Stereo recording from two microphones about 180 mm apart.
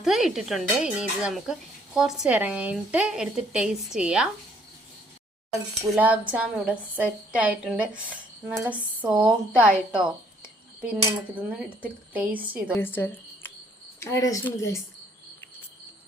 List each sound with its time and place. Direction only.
0.0 s speech: centre (ahead or behind)
5.9 s a woman's voice: 10° right (ahead or behind)
12.7 s a woman's voice: 10° left (ahead or behind)